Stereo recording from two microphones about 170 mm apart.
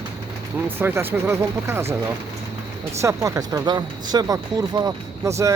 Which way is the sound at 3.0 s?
15° right (ahead or behind).